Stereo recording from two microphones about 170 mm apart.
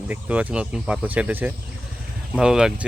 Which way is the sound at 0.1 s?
10° right (ahead or behind).